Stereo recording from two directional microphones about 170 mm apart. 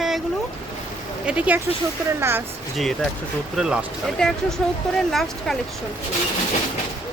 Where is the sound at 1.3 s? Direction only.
10° right (ahead or behind).